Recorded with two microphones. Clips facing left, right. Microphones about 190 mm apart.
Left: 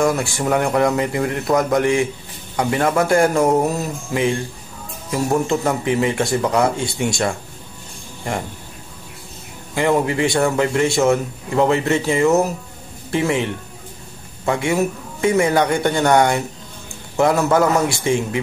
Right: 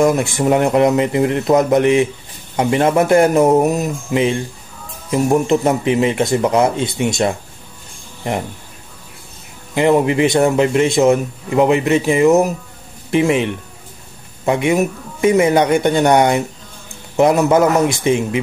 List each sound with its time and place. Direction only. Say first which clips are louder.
0.0 s speech: right 4 dB; 20° right (ahead or behind)
9.8 s a man's voice: right 4 dB; 20° right (ahead or behind)